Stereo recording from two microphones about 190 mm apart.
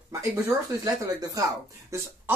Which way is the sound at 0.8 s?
20° right (ahead or behind).